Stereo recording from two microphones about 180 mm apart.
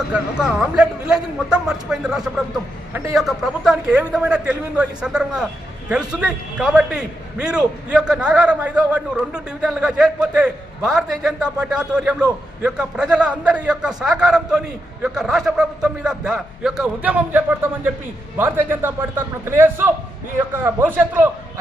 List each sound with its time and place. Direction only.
0.1 s a man's voice: 5° right (ahead or behind)
2.9 s a man's voice: 15° right (ahead or behind)
3.2 s a man's voice: centre (ahead or behind)